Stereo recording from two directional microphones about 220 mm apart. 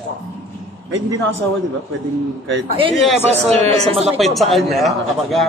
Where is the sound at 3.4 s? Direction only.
30° right (ahead or behind).